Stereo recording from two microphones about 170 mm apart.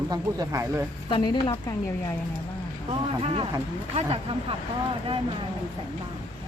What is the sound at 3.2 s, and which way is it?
Speech, 35° right (ahead or behind).